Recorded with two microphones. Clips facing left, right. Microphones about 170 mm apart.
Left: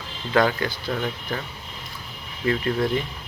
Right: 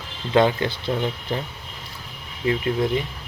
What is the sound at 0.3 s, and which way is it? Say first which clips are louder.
Speech: right 3 dB; 25° right (ahead or behind).